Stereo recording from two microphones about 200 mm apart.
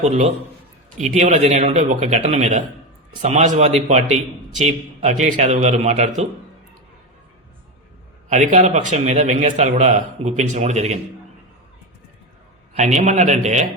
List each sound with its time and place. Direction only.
0.0 s a man's voice: 35° right (ahead or behind)
8.3 s a man's voice: 40° right (ahead or behind)
12.7 s a man's voice: 35° right (ahead or behind)